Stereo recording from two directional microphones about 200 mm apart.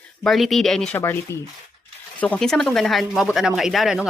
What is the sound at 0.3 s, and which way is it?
Speech, centre (ahead or behind).